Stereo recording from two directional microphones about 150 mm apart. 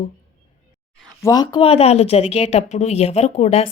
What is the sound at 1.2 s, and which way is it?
Speech, 25° left (ahead or behind).